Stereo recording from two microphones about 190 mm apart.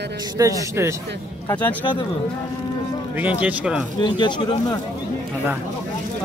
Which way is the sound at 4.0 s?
25° left (ahead or behind).